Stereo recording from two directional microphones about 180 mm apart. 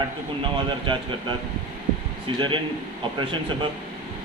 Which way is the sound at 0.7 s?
25° right (ahead or behind).